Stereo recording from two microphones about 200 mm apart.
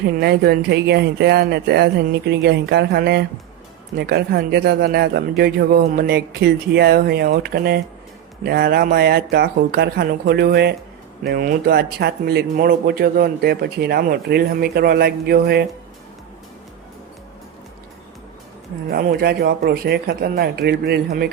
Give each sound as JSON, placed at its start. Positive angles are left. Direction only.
{"t": 0.0, "sound": "speech", "side_deg": -50}
{"t": 18.9, "sound": "speech", "side_deg": -50}